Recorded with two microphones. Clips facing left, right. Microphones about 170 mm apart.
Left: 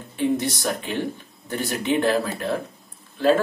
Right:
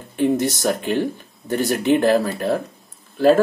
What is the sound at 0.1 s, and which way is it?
Speech, 45° right (ahead or behind).